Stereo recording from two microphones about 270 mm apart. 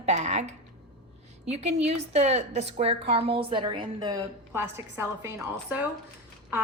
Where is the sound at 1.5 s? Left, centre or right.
Right.